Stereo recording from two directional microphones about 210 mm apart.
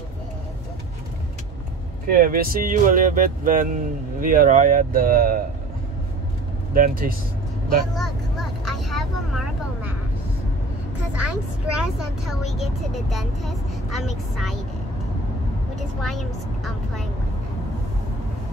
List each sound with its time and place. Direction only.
2.0 s speech: 45° right (ahead or behind)
6.7 s speech: 40° right (ahead or behind)
7.9 s vehicle: centre (ahead or behind)
11.1 s speech: 90° right
11.8 s speech: centre (ahead or behind)